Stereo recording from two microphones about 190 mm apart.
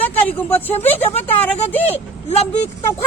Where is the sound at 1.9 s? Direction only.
35° left (ahead or behind).